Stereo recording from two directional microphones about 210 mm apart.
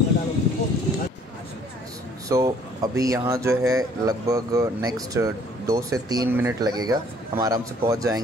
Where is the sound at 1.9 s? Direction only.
15° right (ahead or behind).